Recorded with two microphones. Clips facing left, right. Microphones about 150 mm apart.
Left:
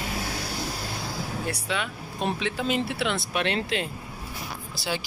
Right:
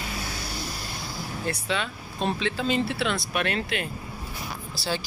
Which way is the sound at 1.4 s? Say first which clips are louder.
Right 3 dB; 10° left (ahead or behind).